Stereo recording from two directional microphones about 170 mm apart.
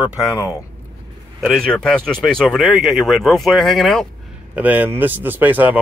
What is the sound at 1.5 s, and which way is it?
Speech, 5° left (ahead or behind).